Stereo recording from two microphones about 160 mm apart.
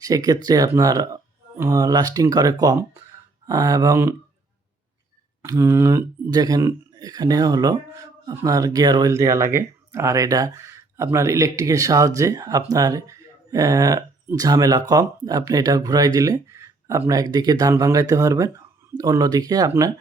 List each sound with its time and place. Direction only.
0.0 s speech: 25° right (ahead or behind)
5.4 s speech: 15° right (ahead or behind)